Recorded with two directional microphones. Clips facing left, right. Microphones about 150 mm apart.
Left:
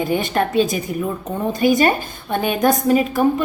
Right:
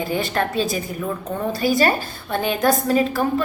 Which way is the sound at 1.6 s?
20° left (ahead or behind).